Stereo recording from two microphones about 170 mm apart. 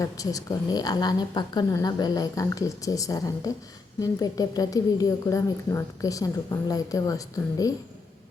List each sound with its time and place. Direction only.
0.0 s speech: 20° left (ahead or behind)